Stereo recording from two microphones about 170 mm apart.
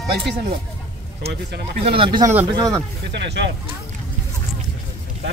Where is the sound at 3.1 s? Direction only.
90° right.